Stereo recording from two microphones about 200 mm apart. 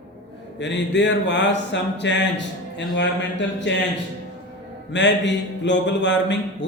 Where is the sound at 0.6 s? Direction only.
60° left (ahead or behind).